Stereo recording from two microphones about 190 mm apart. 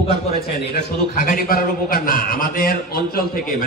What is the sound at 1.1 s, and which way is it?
A man's voice, 45° left (ahead or behind).